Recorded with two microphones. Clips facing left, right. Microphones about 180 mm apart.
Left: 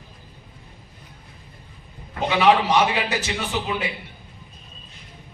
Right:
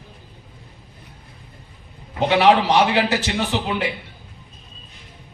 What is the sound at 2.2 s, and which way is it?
A man's voice, 70° right (ahead or behind).